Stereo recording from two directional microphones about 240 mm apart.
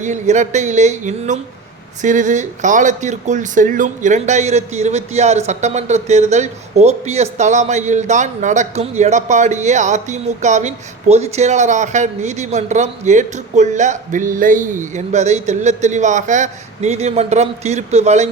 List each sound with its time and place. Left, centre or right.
0.0 s speech: right